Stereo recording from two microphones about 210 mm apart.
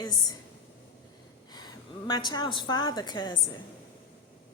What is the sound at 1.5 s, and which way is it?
A woman's voice, 20° left (ahead or behind).